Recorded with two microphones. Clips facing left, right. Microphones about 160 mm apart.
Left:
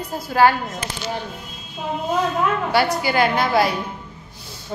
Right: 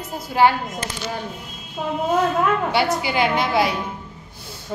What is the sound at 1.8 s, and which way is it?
Speech, 50° right (ahead or behind).